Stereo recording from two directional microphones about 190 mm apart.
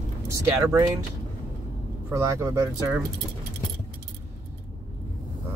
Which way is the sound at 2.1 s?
15° right (ahead or behind).